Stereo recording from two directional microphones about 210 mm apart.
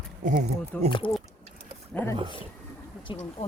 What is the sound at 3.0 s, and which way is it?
Speech, 25° left (ahead or behind).